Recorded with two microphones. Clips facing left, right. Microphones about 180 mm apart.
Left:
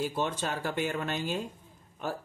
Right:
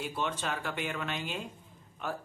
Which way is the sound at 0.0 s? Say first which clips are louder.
Left 3 dB; 40° left (ahead or behind).